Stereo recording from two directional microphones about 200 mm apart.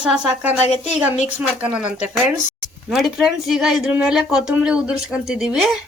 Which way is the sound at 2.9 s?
Centre (ahead or behind).